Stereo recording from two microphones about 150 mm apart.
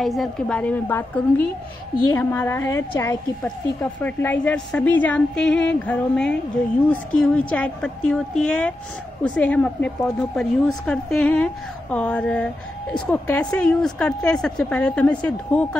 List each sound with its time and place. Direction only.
0.0 s a woman's voice: centre (ahead or behind)